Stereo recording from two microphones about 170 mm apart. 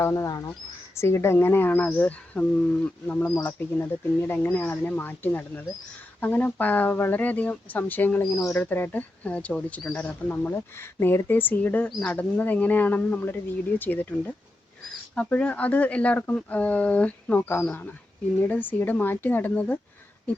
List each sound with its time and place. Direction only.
0.0 s speech: 15° left (ahead or behind)
15.1 s speech: 10° left (ahead or behind)